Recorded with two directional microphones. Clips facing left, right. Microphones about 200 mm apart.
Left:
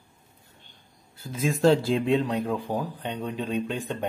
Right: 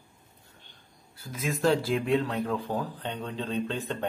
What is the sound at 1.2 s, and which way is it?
Speech, 30° left (ahead or behind).